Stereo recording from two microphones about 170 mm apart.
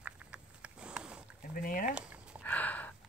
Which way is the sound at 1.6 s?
55° left (ahead or behind).